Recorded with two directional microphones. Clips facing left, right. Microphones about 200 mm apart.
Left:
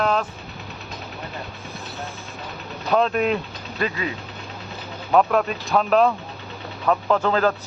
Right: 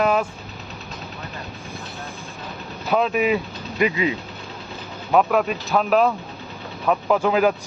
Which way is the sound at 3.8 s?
20° right (ahead or behind).